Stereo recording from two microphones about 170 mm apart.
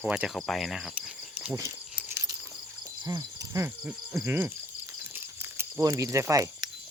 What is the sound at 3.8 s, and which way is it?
Speech, 5° right (ahead or behind).